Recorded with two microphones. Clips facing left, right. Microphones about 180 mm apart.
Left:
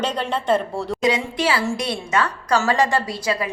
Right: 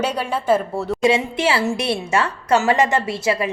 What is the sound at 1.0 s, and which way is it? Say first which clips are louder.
A woman's voice: right 3 dB; 25° right (ahead or behind).